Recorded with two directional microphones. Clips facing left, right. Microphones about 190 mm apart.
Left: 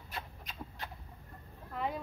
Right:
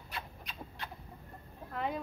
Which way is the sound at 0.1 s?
40° left (ahead or behind).